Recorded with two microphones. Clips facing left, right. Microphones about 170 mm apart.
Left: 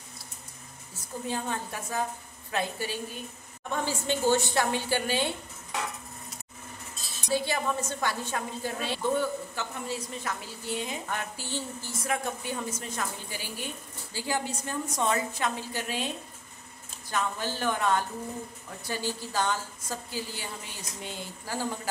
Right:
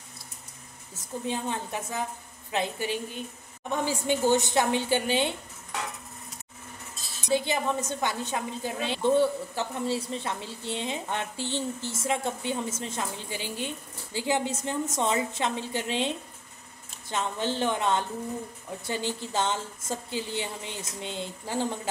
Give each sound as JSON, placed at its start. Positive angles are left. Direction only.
{"t": 0.9, "sound": "a woman's voice", "side_deg": -20}
{"t": 7.2, "sound": "a woman's voice", "side_deg": -20}
{"t": 17.1, "sound": "a woman's voice", "side_deg": -25}